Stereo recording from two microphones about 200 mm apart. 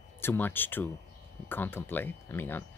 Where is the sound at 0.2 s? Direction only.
10° left (ahead or behind).